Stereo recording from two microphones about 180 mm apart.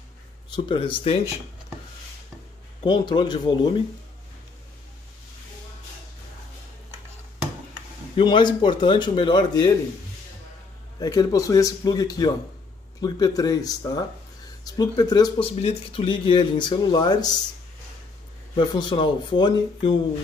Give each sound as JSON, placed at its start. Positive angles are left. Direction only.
{"t": 0.7, "sound": "speech", "side_deg": 30}
{"t": 2.8, "sound": "speech", "side_deg": 25}
{"t": 8.2, "sound": "speech", "side_deg": 25}
{"t": 11.0, "sound": "speech", "side_deg": 20}
{"t": 15.6, "sound": "speech", "side_deg": 35}
{"t": 18.6, "sound": "speech", "side_deg": 25}